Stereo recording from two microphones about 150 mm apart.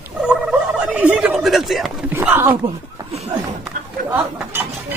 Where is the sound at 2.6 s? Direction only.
40° right (ahead or behind).